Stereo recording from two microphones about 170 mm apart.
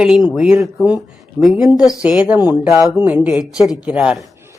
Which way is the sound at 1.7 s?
20° left (ahead or behind).